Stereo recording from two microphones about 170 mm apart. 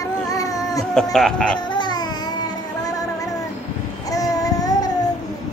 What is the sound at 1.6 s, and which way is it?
Music, 25° left (ahead or behind).